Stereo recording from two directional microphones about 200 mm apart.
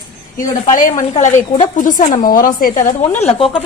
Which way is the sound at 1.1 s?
30° left (ahead or behind).